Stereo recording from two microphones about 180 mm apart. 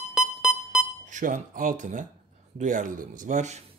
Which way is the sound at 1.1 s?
45° right (ahead or behind).